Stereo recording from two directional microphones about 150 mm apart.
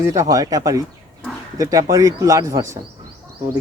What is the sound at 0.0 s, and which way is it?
A man's voice, 20° right (ahead or behind).